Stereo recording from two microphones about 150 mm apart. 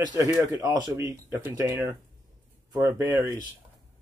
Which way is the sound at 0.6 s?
25° right (ahead or behind).